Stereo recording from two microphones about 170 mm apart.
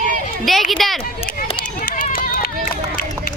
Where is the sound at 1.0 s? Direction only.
35° left (ahead or behind).